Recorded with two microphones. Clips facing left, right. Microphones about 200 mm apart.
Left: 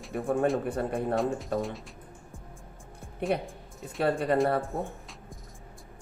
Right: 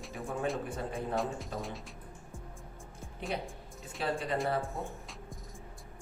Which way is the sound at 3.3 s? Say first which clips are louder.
Left 7 dB; 60° left (ahead or behind).